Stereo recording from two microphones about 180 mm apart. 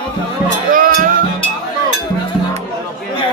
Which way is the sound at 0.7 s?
50° right (ahead or behind).